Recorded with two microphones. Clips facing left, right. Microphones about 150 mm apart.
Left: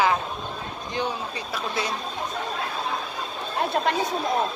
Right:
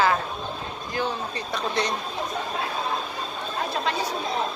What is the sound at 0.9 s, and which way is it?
Speech, 15° left (ahead or behind).